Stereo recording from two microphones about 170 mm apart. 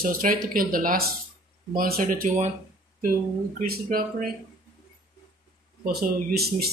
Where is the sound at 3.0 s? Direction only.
55° right (ahead or behind).